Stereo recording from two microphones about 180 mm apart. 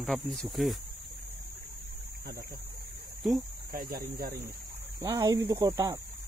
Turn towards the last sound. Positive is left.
turn(degrees=-20)  # may be behind; listen again after turning